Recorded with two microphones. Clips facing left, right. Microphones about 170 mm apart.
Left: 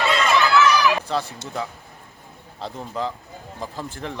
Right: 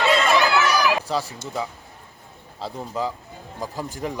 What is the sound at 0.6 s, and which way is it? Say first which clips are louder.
Run: left 2 dB; 40° right (ahead or behind).